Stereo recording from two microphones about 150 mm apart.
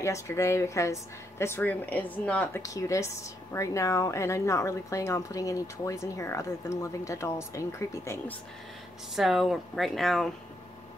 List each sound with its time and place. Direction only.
0.0 s speech: 20° left (ahead or behind)
2.6 s speech: 20° left (ahead or behind)
9.1 s speech: centre (ahead or behind)